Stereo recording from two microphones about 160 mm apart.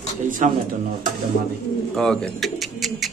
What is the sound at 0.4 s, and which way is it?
Speech, 50° right (ahead or behind).